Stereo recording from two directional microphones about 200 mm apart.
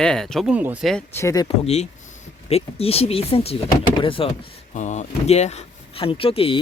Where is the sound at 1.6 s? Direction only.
35° left (ahead or behind).